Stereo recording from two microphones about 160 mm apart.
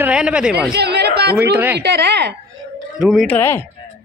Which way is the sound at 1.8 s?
90° right.